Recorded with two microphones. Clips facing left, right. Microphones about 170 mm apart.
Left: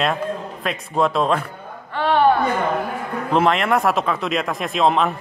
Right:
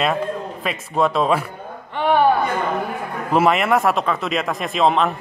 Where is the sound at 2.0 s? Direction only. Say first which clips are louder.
Right 1 dB; 15° right (ahead or behind).